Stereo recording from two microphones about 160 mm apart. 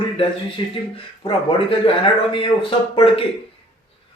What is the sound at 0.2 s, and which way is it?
Speech, 35° left (ahead or behind).